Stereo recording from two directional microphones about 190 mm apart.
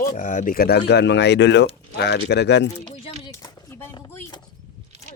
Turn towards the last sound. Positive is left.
turn(degrees=20)  # may be behind; listen again after turning